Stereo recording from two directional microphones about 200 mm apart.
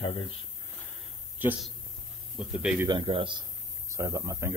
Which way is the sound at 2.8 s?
25° right (ahead or behind).